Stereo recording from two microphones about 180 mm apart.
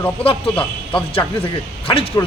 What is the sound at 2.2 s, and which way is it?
Speech, 20° left (ahead or behind).